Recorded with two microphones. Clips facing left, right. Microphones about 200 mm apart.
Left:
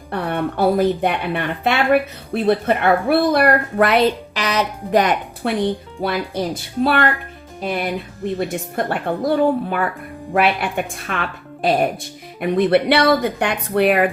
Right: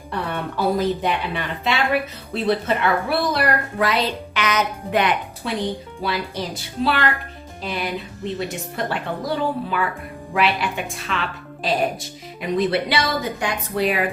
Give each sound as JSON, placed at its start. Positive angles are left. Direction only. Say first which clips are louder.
{"t": 0.1, "sound": "speech", "louder": "left 5 dB", "side_deg": 55}
{"t": 4.4, "sound": "a woman's voice", "louder": "left 1 dB", "side_deg": 35}
{"t": 5.4, "sound": "a woman's voice", "louder": "left 6 dB", "side_deg": 55}